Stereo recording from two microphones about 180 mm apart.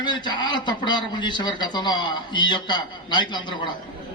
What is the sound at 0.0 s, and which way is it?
A man's voice, 25° left (ahead or behind).